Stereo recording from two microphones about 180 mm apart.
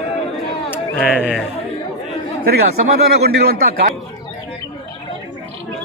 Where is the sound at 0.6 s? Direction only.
10° left (ahead or behind).